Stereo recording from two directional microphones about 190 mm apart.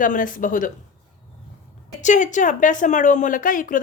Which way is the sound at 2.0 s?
40° left (ahead or behind).